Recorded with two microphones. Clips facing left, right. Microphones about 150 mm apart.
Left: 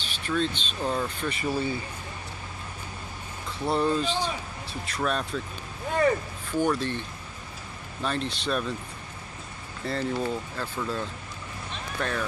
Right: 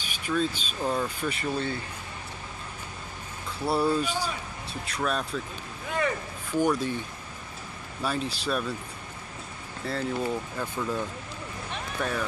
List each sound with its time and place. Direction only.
0.0 s speech: 10° right (ahead or behind); by 1.8 s 5° left (ahead or behind)
3.6 s speech: 5° right (ahead or behind)
6.6 s speech: 10° right (ahead or behind)
9.8 s speech: centre (ahead or behind)
10.3 s speech: 15° right (ahead or behind)